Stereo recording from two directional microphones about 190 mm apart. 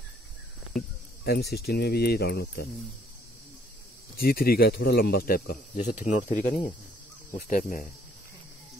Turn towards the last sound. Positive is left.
turn(degrees=45)  # may be behind; listen again after turning